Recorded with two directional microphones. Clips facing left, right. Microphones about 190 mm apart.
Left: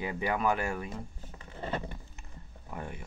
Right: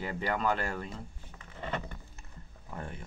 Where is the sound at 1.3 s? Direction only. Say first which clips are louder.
Left 2 dB; 30° left (ahead or behind).